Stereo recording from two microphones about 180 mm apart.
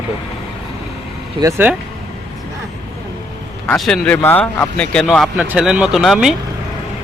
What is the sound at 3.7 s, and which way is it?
Speech, centre (ahead or behind).